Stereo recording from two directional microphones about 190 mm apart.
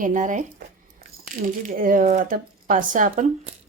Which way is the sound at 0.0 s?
40° right (ahead or behind).